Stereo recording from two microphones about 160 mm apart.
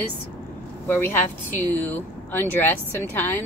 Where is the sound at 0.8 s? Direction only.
10° left (ahead or behind).